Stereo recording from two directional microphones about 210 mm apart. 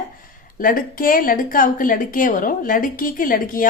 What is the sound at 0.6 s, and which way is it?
A woman's voice, 40° left (ahead or behind).